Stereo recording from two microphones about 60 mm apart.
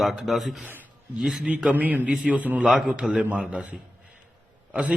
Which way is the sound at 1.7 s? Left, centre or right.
Right.